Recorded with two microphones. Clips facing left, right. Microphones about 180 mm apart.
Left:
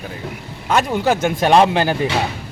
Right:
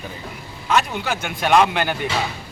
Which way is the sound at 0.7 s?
45° left (ahead or behind).